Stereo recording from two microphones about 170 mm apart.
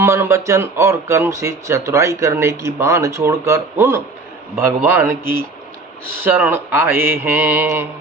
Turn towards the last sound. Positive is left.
turn(degrees=-15)  # may be behind; listen again after turning